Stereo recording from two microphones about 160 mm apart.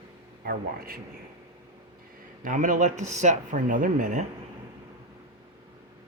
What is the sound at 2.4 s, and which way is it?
Speech, 55° right (ahead or behind).